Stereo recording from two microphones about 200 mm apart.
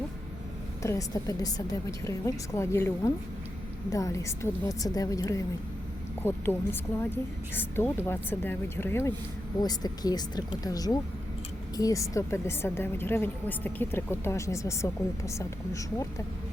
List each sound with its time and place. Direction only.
0.8 s a woman's voice: 15° left (ahead or behind)